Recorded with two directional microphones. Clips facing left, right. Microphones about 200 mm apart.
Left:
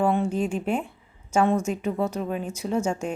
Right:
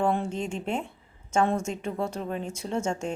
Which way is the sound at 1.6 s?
25° right (ahead or behind).